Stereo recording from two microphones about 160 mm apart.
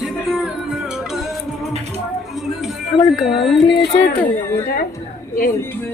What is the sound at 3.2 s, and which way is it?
Music, centre (ahead or behind).